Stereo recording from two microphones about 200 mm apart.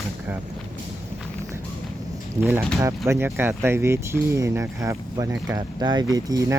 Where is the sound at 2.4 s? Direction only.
10° right (ahead or behind).